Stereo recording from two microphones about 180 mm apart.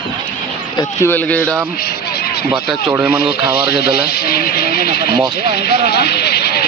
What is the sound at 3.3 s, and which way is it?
Speech, 60° left (ahead or behind).